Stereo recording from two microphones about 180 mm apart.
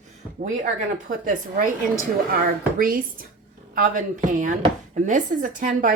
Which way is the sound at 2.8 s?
50° right (ahead or behind).